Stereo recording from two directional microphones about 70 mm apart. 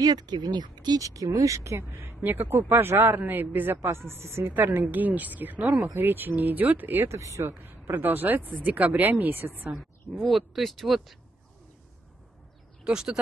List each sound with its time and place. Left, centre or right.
0.0 s speech: right
1.0 s speech: right
7.1 s speech: right
7.6 s speech: right
10.2 s speech: centre
12.8 s speech: centre